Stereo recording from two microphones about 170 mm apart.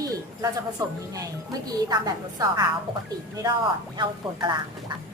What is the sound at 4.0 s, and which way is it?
Speech, 25° right (ahead or behind).